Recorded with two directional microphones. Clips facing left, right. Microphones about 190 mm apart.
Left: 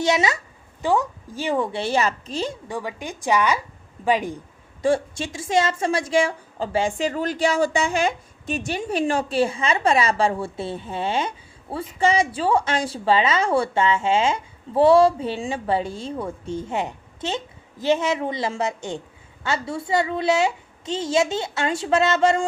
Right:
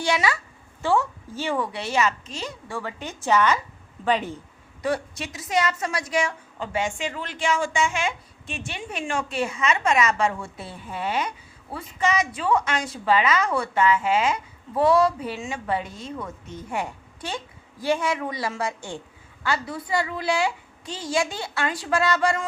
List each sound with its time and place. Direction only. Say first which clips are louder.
0.0 s a woman's voice: left 3 dB; 20° left (ahead or behind)
2.6 s a woman's voice: left 3 dB; 15° left (ahead or behind)
4.8 s a woman's voice: left 5 dB; 25° left (ahead or behind)